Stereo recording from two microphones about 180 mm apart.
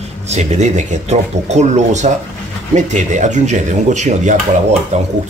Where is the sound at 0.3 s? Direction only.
40° right (ahead or behind).